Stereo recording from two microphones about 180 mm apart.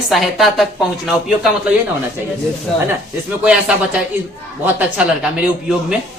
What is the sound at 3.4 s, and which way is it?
Speech, 5° right (ahead or behind).